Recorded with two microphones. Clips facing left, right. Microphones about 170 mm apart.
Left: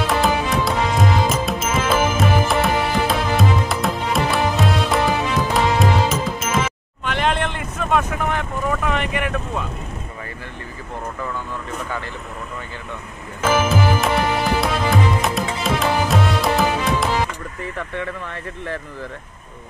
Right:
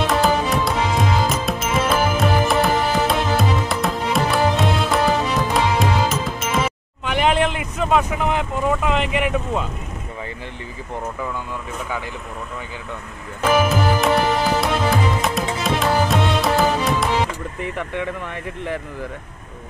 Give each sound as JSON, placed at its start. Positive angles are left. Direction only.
{"t": 0.0, "sound": "music", "side_deg": 0}
{"t": 7.1, "sound": "vehicle", "side_deg": -10}
{"t": 9.1, "sound": "speech", "side_deg": -15}
{"t": 13.4, "sound": "music", "side_deg": 0}
{"t": 17.6, "sound": "speech", "side_deg": -15}